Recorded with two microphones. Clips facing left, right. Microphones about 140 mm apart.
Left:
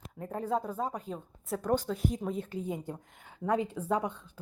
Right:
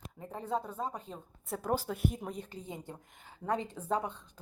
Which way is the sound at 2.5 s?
10° left (ahead or behind).